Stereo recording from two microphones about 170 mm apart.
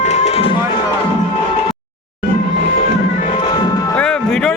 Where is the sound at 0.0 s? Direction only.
40° left (ahead or behind).